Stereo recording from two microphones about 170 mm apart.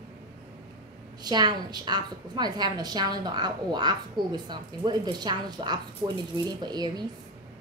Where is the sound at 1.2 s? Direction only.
25° right (ahead or behind).